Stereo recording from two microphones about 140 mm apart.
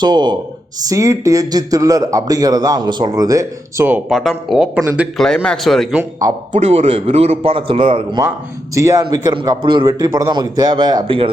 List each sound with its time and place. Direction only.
0.0 s a man's voice: 30° right (ahead or behind)
3.8 s speech: 10° right (ahead or behind)
4.2 s speech: centre (ahead or behind)
5.1 s speech: 5° left (ahead or behind)
6.0 s a man's voice: 25° right (ahead or behind)
6.5 s a man's voice: 50° right (ahead or behind)
8.7 s a man's voice: 25° right (ahead or behind)
9.0 s a man's voice: 35° right (ahead or behind)
9.8 s a man's voice: 25° right (ahead or behind)